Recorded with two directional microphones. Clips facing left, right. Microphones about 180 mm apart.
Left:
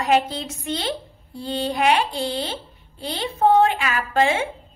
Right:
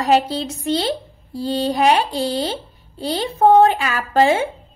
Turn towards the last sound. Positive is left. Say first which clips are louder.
# right 4 dB
turn(degrees=-35)  # may be behind; listen again after turning